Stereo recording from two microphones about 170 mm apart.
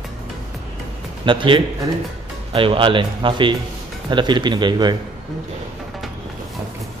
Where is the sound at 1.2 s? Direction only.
30° right (ahead or behind).